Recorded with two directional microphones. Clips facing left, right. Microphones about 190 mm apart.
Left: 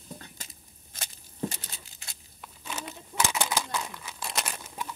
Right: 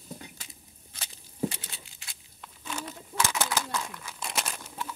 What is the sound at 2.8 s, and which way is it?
Bird, 15° left (ahead or behind).